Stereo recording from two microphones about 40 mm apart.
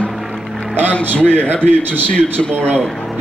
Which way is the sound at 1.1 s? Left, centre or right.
Left.